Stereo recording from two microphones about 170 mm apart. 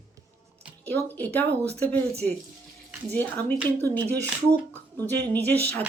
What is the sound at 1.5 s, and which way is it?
Speech, 75° right (ahead or behind).